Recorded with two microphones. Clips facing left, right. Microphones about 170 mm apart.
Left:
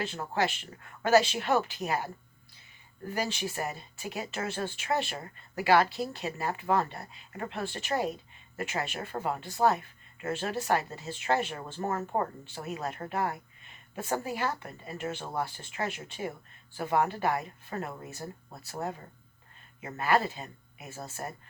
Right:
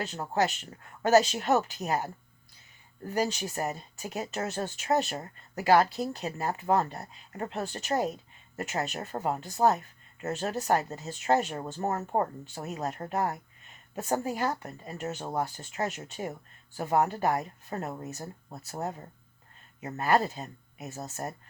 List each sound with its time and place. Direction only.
0.0 s speech: 40° right (ahead or behind)
3.2 s speech: 40° right (ahead or behind)